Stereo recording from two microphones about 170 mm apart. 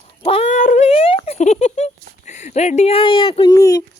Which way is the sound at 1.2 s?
40° left (ahead or behind).